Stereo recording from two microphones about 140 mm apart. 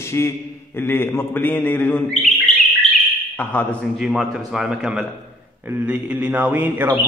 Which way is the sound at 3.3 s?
10° left (ahead or behind).